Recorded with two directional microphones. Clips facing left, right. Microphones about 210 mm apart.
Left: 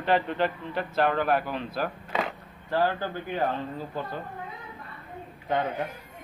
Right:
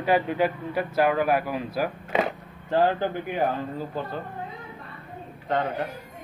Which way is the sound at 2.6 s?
20° right (ahead or behind).